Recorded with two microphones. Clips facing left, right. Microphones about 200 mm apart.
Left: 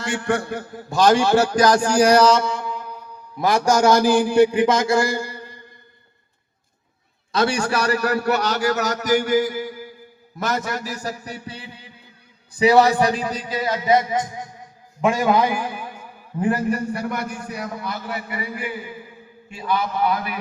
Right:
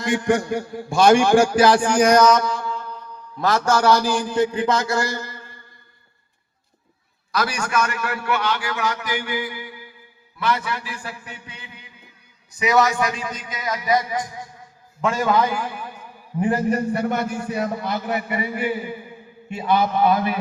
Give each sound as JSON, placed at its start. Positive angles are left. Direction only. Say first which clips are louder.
{"t": 0.0, "sound": "a man's voice", "louder": "right 3 dB", "side_deg": -15}
{"t": 1.7, "sound": "a man's voice", "louder": "even", "side_deg": 40}
{"t": 2.3, "sound": "mantra", "louder": "even", "side_deg": 25}
{"t": 3.9, "sound": "a man's voice", "louder": "left 5 dB", "side_deg": 15}
{"t": 7.3, "sound": "a man's voice", "louder": "left 2 dB", "side_deg": 30}
{"t": 16.4, "sound": "a man's voice", "louder": "right 1 dB", "side_deg": -20}